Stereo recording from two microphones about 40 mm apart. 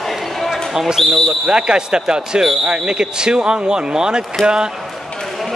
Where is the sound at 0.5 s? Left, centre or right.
Centre.